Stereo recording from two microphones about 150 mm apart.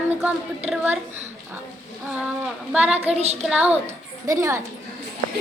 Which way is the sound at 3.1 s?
45° right (ahead or behind).